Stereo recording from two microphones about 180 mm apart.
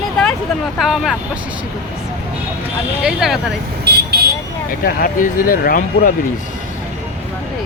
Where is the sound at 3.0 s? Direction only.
Centre (ahead or behind).